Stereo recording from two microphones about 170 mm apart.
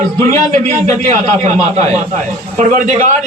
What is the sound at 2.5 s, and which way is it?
Speech, 45° right (ahead or behind).